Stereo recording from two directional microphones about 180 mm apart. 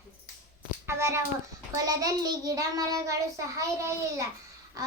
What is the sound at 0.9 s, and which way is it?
A child's voice, 15° right (ahead or behind).